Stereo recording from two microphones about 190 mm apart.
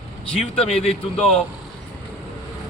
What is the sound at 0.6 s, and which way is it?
Speech, 30° left (ahead or behind).